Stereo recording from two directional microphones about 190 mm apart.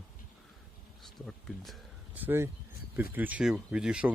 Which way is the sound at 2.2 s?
10° right (ahead or behind).